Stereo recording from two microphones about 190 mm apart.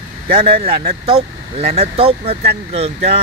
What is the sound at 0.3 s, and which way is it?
Speech, 30° right (ahead or behind).